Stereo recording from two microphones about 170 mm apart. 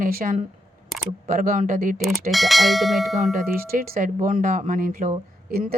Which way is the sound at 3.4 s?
60° right (ahead or behind).